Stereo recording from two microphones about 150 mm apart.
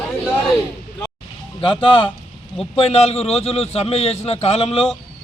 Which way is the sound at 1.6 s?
35° left (ahead or behind).